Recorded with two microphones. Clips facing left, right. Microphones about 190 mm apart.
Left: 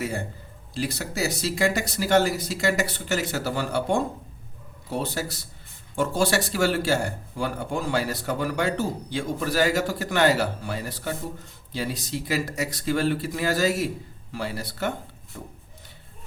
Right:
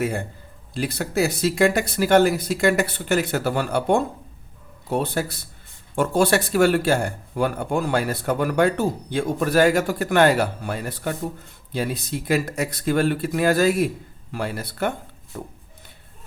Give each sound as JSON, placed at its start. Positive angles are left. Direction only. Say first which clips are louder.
{"t": 0.7, "sound": "speech", "louder": "right 4 dB", "side_deg": -55}